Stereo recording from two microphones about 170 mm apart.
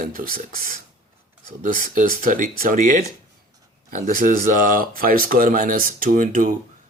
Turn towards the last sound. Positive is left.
turn(degrees=-55)  # may be behind; listen again after turning